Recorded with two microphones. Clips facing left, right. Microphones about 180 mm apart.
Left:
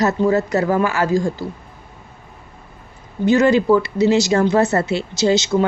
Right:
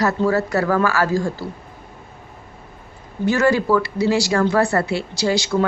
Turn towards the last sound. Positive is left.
turn(degrees=20)  # may be behind; listen again after turning